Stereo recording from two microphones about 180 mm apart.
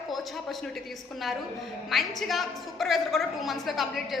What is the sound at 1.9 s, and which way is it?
A woman's voice, centre (ahead or behind).